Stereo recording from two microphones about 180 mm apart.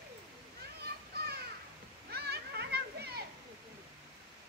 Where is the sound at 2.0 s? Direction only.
65° right (ahead or behind).